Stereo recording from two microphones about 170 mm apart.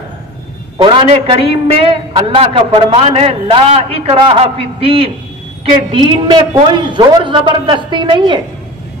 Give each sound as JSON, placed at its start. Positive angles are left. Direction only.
{"t": 0.7, "sound": "a man's voice", "side_deg": -30}